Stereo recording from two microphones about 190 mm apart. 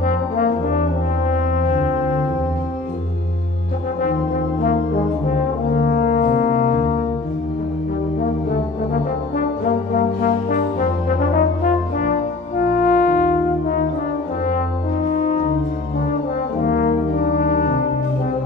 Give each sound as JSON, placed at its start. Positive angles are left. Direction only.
{"t": 0.0, "sound": "brass instrument", "side_deg": 45}
{"t": 5.8, "sound": "brass instrument", "side_deg": 45}
{"t": 9.9, "sound": "brass instrument", "side_deg": 45}
{"t": 12.5, "sound": "french horn", "side_deg": 40}
{"t": 15.0, "sound": "french horn", "side_deg": 40}
{"t": 16.6, "sound": "french horn", "side_deg": 45}